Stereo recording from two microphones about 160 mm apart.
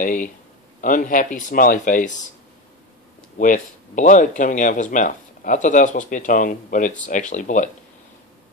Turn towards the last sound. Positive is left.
turn(degrees=50)  # may be behind; listen again after turning